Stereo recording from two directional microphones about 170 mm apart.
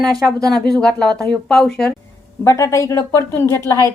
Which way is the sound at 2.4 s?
15° left (ahead or behind).